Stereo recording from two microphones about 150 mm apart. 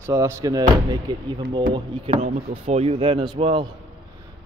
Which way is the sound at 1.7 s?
45° right (ahead or behind).